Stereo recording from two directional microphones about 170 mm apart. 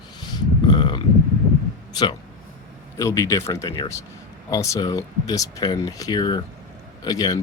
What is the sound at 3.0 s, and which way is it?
Speech, 20° left (ahead or behind).